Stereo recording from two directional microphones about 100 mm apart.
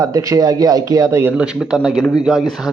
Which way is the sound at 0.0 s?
35° right (ahead or behind).